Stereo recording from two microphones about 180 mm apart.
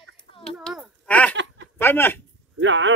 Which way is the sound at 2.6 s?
90° right.